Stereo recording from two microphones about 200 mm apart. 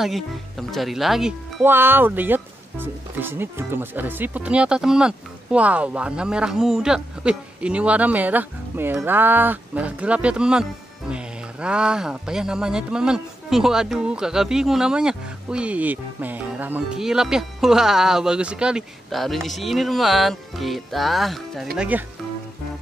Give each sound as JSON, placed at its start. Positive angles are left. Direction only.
{"t": 0.0, "sound": "speech", "side_deg": 0}